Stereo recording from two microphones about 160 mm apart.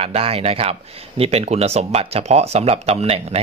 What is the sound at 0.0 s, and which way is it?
Speech, 40° right (ahead or behind).